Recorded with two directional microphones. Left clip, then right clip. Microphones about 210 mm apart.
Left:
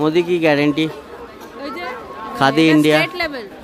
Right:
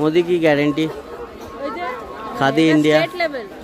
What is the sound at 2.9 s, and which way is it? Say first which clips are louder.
Speech: even; 45° left (ahead or behind).